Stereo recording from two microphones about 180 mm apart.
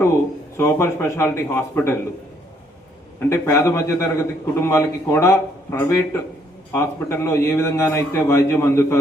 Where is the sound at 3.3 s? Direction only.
15° left (ahead or behind).